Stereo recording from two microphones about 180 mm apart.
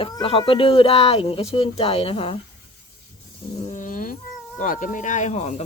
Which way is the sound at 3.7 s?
45° left (ahead or behind).